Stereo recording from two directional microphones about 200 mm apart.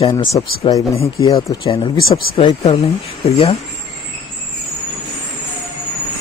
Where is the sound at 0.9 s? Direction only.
30° left (ahead or behind).